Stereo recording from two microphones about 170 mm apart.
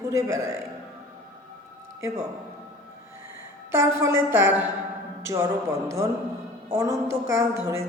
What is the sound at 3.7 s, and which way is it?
A man's voice, 15° right (ahead or behind).